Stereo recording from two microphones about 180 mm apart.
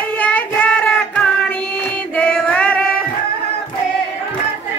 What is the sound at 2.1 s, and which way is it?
Female singing, 5° left (ahead or behind).